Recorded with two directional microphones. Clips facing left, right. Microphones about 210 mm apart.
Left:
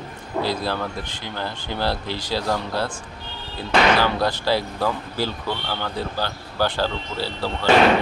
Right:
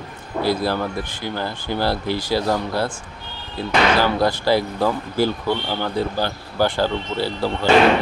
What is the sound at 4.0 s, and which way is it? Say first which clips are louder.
Speech: right 3 dB; 15° right (ahead or behind).